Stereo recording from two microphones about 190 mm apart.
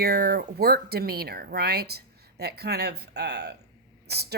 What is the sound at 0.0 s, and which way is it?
A woman's voice, 55° right (ahead or behind).